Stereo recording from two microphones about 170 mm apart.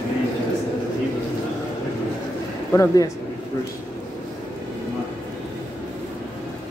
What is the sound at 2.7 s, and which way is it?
Speech, 20° left (ahead or behind).